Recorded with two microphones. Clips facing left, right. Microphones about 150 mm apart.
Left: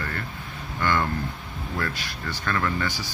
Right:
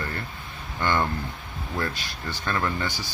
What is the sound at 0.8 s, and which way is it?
Speech, 25° right (ahead or behind).